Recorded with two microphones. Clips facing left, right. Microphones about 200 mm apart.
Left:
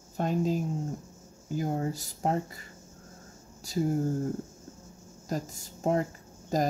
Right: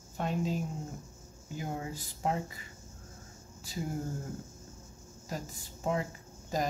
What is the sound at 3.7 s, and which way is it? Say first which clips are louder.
Speech: left 9 dB; 40° left (ahead or behind).